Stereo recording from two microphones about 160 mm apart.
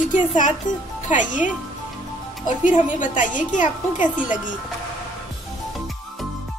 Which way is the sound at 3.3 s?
55° left (ahead or behind).